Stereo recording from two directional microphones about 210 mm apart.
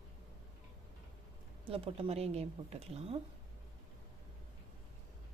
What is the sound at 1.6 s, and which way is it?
A woman's voice, 25° right (ahead or behind).